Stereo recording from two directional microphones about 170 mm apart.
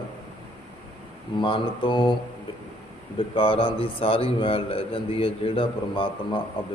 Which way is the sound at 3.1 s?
30° left (ahead or behind).